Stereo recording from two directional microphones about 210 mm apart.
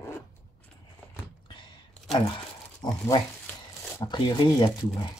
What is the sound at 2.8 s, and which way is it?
Speech, 20° left (ahead or behind).